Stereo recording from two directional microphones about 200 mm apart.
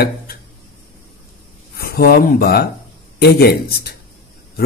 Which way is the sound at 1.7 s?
50° left (ahead or behind).